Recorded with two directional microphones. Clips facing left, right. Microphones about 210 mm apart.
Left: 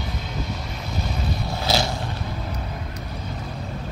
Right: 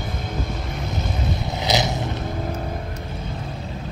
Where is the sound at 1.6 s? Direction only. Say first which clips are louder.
Right 1 dB; 20° right (ahead or behind).